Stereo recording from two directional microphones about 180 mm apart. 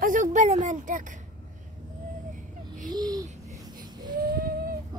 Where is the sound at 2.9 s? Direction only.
20° right (ahead or behind).